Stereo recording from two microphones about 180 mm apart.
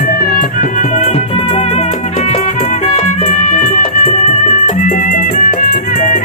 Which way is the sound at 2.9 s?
40° left (ahead or behind).